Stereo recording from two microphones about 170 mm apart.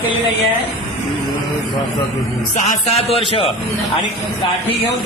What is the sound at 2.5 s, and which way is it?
Speech, 40° left (ahead or behind).